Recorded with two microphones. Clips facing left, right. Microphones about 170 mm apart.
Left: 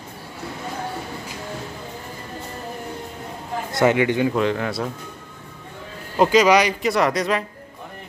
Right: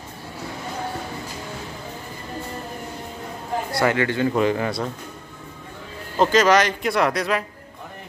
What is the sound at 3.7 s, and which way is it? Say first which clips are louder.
Speech: left 4 dB; 20° left (ahead or behind).